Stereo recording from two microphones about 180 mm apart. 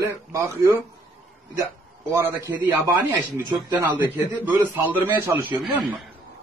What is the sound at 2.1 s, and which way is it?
Speech, 15° right (ahead or behind).